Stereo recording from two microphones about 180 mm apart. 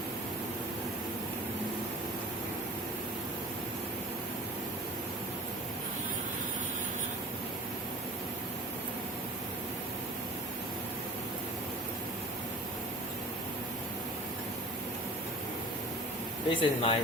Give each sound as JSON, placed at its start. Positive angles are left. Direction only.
{"t": 16.5, "sound": "speech", "side_deg": 30}